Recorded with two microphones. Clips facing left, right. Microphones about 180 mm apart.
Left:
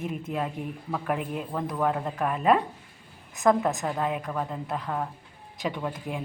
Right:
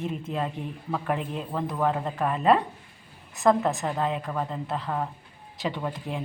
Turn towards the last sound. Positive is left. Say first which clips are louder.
# even
turn(degrees=5)  # may be behind; listen again after turning